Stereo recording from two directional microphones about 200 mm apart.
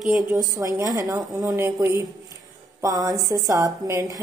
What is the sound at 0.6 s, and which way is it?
A woman's voice, 15° right (ahead or behind).